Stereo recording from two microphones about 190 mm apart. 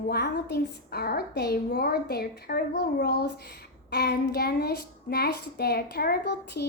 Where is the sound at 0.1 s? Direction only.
60° left (ahead or behind).